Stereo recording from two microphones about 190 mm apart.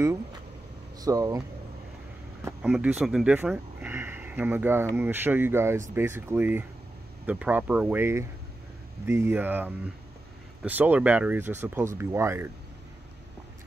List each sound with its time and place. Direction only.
1.0 s speech: 20° right (ahead or behind)
2.4 s speech: 5° right (ahead or behind)